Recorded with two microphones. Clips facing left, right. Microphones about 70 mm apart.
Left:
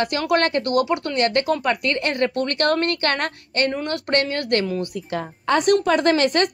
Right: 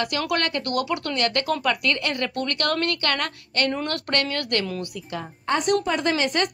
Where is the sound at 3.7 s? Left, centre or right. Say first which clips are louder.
Left 1 dB; centre.